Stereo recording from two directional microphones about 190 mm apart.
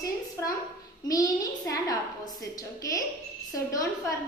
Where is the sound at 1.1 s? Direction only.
20° left (ahead or behind).